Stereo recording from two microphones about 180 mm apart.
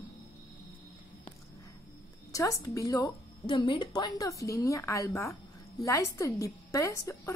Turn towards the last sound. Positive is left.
turn(degrees=20)  # may be behind; listen again after turning